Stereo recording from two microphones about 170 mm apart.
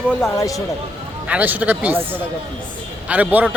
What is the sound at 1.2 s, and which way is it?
Speech, 10° right (ahead or behind).